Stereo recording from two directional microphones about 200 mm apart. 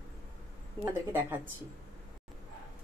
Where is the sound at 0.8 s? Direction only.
10° right (ahead or behind).